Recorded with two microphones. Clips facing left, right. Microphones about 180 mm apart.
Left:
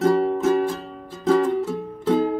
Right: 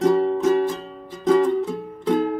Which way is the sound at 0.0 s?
5° left (ahead or behind).